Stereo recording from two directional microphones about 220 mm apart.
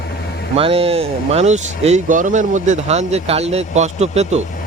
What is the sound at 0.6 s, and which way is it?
Speech, 25° right (ahead or behind).